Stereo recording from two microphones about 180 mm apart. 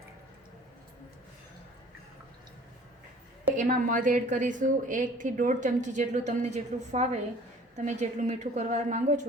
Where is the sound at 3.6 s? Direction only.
50° right (ahead or behind).